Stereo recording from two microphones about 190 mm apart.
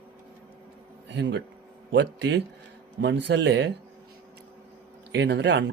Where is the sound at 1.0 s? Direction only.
65° right (ahead or behind).